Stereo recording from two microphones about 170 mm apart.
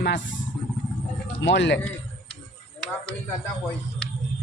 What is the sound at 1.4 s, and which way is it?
Speech, 90° left.